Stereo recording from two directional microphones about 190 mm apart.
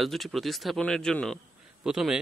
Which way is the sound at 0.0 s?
Centre (ahead or behind).